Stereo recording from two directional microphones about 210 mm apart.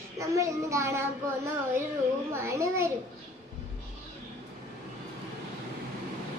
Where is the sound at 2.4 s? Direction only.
15° right (ahead or behind).